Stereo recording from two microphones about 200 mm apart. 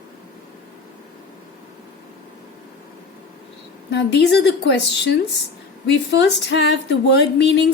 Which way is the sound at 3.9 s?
60° left (ahead or behind).